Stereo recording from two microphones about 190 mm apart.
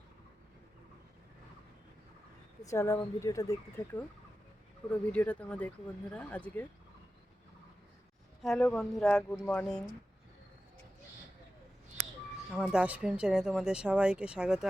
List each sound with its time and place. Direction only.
2.6 s speech: 15° left (ahead or behind)
4.9 s speech: 5° left (ahead or behind)
8.4 s speech: centre (ahead or behind)
12.5 s speech: 5° right (ahead or behind)